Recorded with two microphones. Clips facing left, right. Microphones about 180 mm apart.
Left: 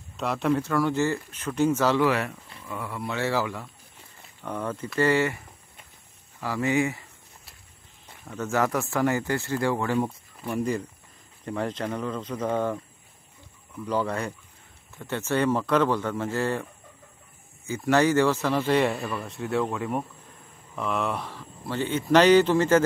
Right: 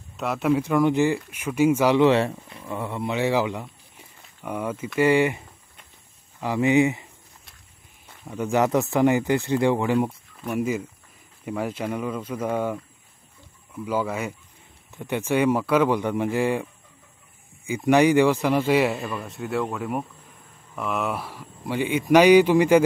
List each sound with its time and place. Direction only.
0.2 s speech: centre (ahead or behind)
2.0 s speech: 30° right (ahead or behind)
6.4 s speech: 20° right (ahead or behind)
8.3 s speech: 15° right (ahead or behind)
13.8 s a man's voice: 5° right (ahead or behind)
17.6 s a man's voice: 15° right (ahead or behind)